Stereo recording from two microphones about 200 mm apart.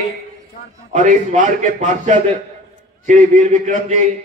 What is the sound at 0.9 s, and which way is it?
A man's voice, 40° right (ahead or behind).